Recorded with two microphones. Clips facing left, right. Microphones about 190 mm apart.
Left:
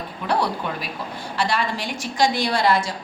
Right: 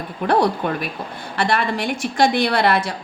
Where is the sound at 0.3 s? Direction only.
55° right (ahead or behind).